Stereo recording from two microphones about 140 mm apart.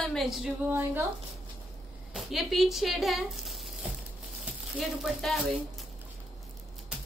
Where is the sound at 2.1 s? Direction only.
Centre (ahead or behind).